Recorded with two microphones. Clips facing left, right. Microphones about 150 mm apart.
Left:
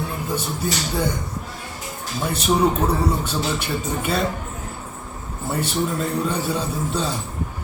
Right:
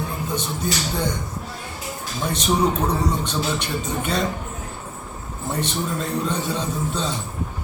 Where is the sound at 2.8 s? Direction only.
5° left (ahead or behind).